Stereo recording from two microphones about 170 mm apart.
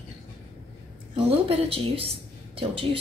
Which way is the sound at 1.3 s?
35° right (ahead or behind).